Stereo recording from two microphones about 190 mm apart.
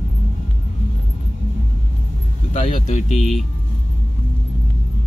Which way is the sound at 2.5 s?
40° left (ahead or behind).